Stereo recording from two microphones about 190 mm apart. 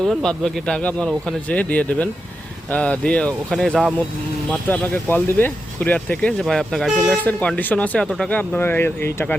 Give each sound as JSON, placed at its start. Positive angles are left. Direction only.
{"t": 0.0, "sound": "speech", "side_deg": 0}